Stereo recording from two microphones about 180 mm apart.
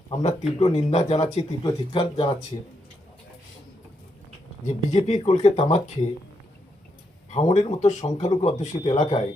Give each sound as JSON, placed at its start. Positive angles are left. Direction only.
{"t": 0.2, "sound": "speech", "side_deg": 35}
{"t": 1.4, "sound": "speech", "side_deg": 25}
{"t": 4.6, "sound": "speech", "side_deg": 40}
{"t": 7.3, "sound": "speech", "side_deg": 40}